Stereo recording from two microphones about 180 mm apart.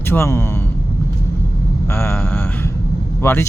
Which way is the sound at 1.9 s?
10° left (ahead or behind).